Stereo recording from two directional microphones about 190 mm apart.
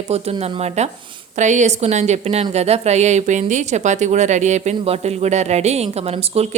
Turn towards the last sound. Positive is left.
turn(degrees=-35)  # may be behind; listen again after turning